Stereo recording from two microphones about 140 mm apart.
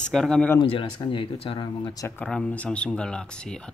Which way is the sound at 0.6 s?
40° left (ahead or behind).